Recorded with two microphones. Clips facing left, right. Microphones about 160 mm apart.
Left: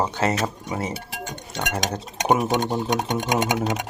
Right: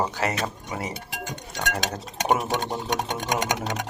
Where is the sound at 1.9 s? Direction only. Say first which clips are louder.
Left 4 dB; 15° left (ahead or behind).